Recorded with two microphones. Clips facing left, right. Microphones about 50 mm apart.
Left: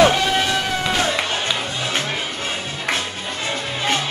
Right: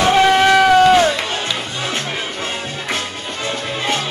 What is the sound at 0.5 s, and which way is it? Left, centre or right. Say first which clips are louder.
Music: right 11 dB; right.